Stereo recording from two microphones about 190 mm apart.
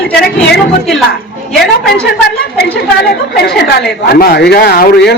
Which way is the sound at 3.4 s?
55° left (ahead or behind).